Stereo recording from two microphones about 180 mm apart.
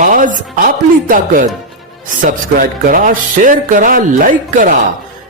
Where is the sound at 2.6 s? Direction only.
50° right (ahead or behind).